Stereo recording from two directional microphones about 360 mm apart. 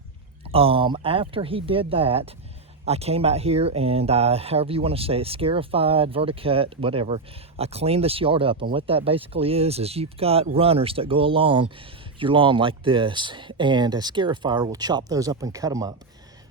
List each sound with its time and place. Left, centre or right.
0.4 s speech: centre